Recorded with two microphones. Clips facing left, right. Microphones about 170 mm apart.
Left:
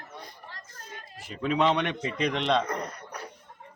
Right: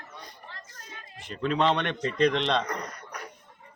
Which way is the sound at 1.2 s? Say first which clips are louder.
Even; 5° left (ahead or behind).